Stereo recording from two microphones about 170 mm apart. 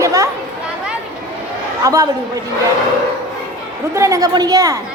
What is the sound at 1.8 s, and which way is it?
Speech, 20° right (ahead or behind).